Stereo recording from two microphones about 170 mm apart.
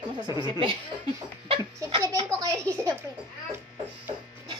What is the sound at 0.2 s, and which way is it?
Speech, 25° right (ahead or behind).